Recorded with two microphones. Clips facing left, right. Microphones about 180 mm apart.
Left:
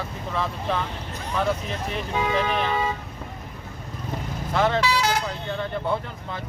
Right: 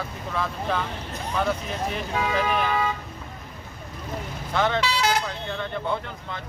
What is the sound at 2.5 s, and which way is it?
Vehicle, 30° left (ahead or behind).